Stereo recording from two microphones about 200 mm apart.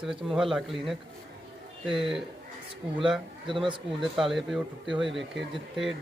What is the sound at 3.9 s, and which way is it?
Speech, centre (ahead or behind).